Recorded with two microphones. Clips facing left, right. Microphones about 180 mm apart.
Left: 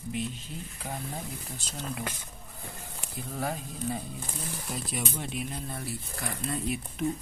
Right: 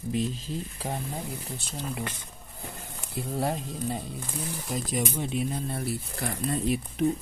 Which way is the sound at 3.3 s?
35° right (ahead or behind).